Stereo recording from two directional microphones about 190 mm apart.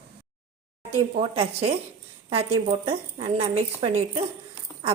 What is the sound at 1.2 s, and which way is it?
A woman's voice, 30° right (ahead or behind).